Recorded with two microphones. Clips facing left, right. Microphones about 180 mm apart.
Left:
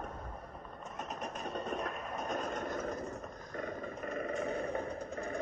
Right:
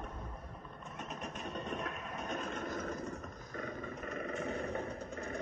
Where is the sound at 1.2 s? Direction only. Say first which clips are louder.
Left 3 dB; 40° left (ahead or behind).